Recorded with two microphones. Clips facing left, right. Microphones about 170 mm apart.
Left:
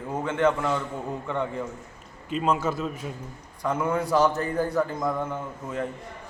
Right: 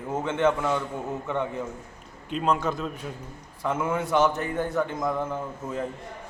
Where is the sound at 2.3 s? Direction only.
5° left (ahead or behind).